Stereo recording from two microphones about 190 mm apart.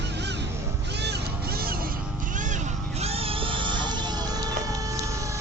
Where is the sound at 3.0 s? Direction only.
30° right (ahead or behind).